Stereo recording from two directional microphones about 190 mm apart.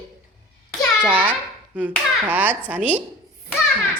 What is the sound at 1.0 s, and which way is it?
A child's voice, 10° right (ahead or behind).